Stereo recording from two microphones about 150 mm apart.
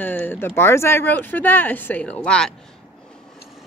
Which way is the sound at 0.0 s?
10° left (ahead or behind).